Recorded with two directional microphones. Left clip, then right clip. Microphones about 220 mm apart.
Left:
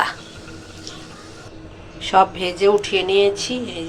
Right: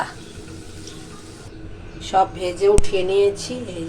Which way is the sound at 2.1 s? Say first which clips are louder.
Left 3 dB; centre (ahead or behind).